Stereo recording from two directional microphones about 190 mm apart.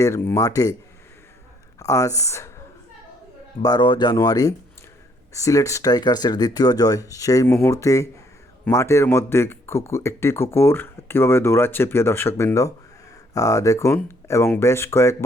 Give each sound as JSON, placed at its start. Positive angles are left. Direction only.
{"t": 0.0, "sound": "speech", "side_deg": 15}
{"t": 1.8, "sound": "speech", "side_deg": 15}
{"t": 3.6, "sound": "speech", "side_deg": 20}